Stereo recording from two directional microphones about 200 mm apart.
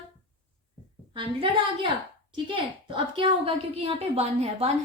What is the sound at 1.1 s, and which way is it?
A woman's voice, 25° right (ahead or behind).